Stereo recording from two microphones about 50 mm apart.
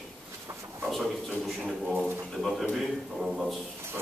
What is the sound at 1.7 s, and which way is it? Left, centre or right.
Speech, centre.